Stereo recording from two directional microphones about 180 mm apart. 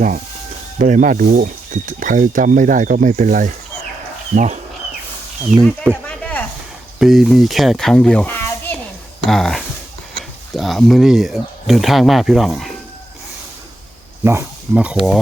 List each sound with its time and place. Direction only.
0.8 s speech: 45° right (ahead or behind)
6.1 s a sound: 5° left (ahead or behind)
7.0 s a child's voice: centre (ahead or behind)
14.3 s speech: 10° right (ahead or behind)